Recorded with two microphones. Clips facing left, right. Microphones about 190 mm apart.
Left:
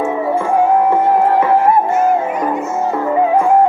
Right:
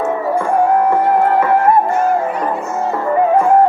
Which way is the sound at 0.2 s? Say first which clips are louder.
Left 1 dB; 25° left (ahead or behind).